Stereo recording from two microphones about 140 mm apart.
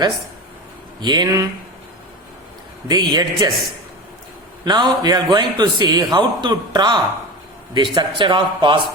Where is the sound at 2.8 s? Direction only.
30° right (ahead or behind).